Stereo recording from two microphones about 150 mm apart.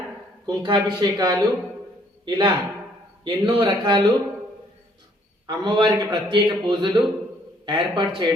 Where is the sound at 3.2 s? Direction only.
30° right (ahead or behind).